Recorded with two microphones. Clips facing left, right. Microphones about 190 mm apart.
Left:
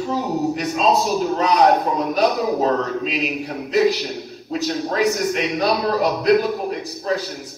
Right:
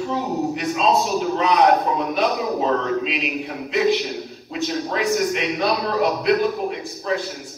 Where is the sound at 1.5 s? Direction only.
Centre (ahead or behind).